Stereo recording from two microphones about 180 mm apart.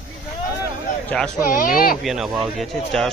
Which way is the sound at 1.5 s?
50° left (ahead or behind).